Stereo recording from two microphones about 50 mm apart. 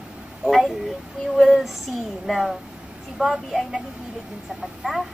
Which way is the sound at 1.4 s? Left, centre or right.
Centre.